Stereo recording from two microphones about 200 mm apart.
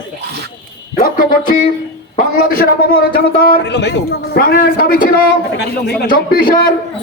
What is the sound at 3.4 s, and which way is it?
A man's voice, 55° left (ahead or behind).